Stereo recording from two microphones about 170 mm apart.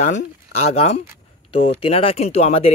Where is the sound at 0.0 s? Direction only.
45° left (ahead or behind).